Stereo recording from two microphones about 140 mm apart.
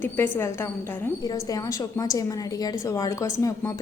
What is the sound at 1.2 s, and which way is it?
A woman's voice, 25° left (ahead or behind).